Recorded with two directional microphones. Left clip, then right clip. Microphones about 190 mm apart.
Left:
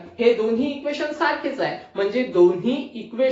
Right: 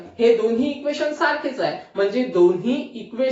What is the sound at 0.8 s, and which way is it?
Speech, 20° left (ahead or behind).